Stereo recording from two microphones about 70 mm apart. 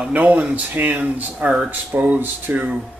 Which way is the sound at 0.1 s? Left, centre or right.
Centre.